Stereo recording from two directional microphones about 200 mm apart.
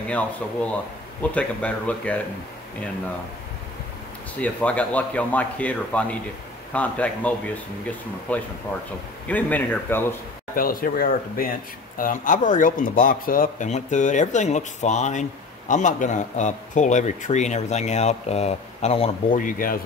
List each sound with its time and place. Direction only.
0.1 s speech: 5° left (ahead or behind)
4.4 s speech: 5° left (ahead or behind)
10.5 s a man's voice: 45° left (ahead or behind); by 19.4 s 30° left (ahead or behind)
19.4 s speech: 45° left (ahead or behind)